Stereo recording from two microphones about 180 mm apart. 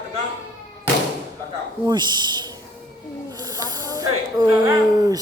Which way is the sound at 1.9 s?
25° right (ahead or behind).